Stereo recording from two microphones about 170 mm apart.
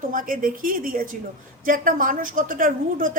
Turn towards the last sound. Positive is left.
turn(degrees=-55)  # may be behind; listen again after turning